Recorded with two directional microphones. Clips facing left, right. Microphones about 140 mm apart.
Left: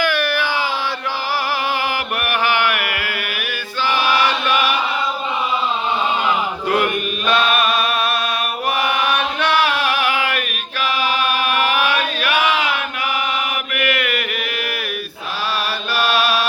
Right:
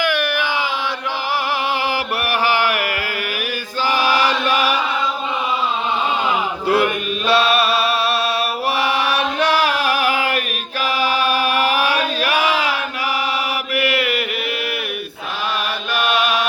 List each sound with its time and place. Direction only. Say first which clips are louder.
0.0 s a sound: even; 20° right (ahead or behind)
2.5 s a sound: right 1 dB; 35° right (ahead or behind)
3.9 s chant: right 1 dB; 40° right (ahead or behind)
6.7 s chant: right 2 dB; 30° right (ahead or behind)
13.7 s chant: right 2 dB; 30° right (ahead or behind)
16.0 s chant: even; 20° right (ahead or behind)